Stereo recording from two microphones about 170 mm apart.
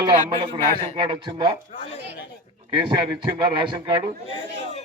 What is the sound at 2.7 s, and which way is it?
A man's voice, 25° right (ahead or behind).